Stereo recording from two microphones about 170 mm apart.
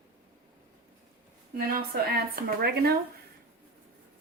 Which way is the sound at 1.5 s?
65° right (ahead or behind).